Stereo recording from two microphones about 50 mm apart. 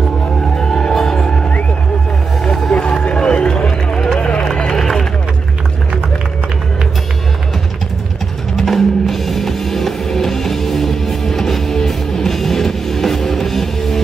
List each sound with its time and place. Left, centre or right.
0.6 s music: centre
2.4 s a sound: centre
2.7 s run: left; by 5.0 s centre
8.5 s music: centre